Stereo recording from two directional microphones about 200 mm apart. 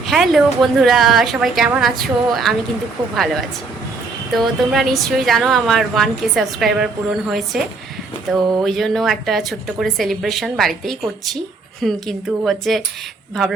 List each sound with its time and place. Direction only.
0.0 s a woman's voice: centre (ahead or behind)
3.0 s speech: 15° right (ahead or behind)
4.4 s a woman's voice: centre (ahead or behind)